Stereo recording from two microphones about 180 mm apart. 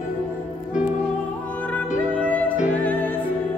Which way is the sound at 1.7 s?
10° left (ahead or behind).